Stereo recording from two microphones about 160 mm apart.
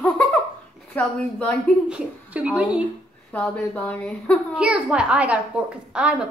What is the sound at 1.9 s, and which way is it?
Speech, 5° right (ahead or behind).